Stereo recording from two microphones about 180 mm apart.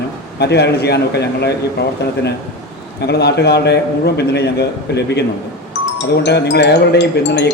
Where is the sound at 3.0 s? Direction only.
65° left (ahead or behind).